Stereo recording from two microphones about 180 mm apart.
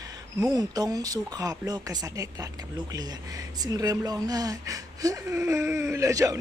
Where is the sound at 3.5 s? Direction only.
20° right (ahead or behind).